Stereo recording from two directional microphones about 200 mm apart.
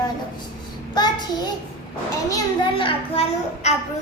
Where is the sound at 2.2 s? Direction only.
20° left (ahead or behind).